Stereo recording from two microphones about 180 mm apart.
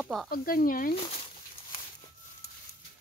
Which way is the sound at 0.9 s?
35° left (ahead or behind).